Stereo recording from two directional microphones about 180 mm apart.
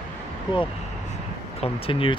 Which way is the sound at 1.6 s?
30° left (ahead or behind).